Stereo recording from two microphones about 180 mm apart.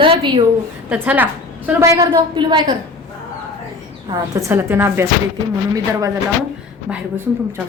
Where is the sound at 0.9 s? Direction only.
5° right (ahead or behind); by 2.8 s 25° right (ahead or behind).